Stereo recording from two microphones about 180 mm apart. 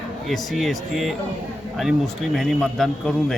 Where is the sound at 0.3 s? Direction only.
Centre (ahead or behind).